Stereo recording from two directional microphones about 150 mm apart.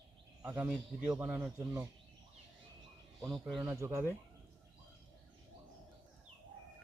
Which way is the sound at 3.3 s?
Centre (ahead or behind).